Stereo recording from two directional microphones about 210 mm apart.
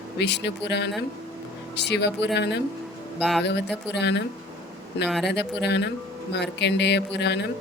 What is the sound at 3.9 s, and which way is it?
Speech, 55° left (ahead or behind).